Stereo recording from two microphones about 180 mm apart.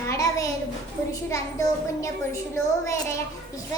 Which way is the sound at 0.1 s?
20° left (ahead or behind).